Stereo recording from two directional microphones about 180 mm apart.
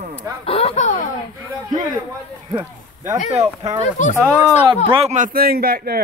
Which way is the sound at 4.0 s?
45° left (ahead or behind).